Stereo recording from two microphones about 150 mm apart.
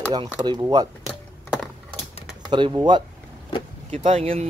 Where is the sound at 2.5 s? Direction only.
30° right (ahead or behind).